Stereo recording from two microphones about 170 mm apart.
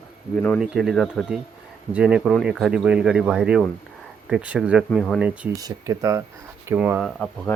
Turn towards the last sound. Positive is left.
turn(degrees=5)  # may be behind; listen again after turning